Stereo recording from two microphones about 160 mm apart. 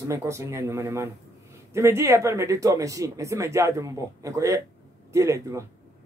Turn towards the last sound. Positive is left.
turn(degrees=-20)  # may be behind; listen again after turning